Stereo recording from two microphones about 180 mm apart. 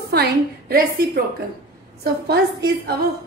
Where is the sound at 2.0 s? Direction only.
65° right (ahead or behind).